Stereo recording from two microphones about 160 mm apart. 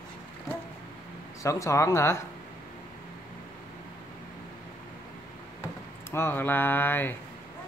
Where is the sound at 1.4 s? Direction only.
20° left (ahead or behind).